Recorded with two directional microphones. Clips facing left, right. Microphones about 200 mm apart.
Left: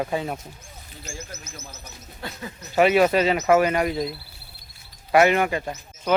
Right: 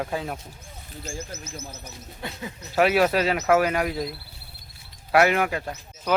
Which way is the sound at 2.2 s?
20° right (ahead or behind).